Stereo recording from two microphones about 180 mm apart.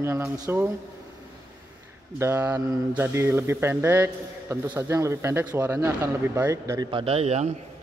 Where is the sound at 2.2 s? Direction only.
15° right (ahead or behind).